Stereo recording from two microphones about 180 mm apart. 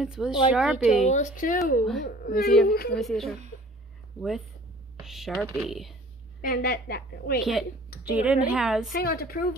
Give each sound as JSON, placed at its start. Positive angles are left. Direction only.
{"t": 0.0, "sound": "speech", "side_deg": -5}
{"t": 1.0, "sound": "a woman's voice", "side_deg": 45}
{"t": 3.0, "sound": "speech", "side_deg": 0}
{"t": 5.0, "sound": "speech", "side_deg": 0}
{"t": 6.4, "sound": "a woman's voice", "side_deg": 55}
{"t": 8.1, "sound": "a woman's voice", "side_deg": -5}
{"t": 8.9, "sound": "a woman's voice", "side_deg": 55}